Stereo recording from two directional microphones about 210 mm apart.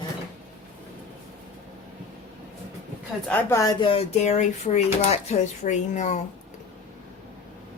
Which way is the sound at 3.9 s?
30° left (ahead or behind).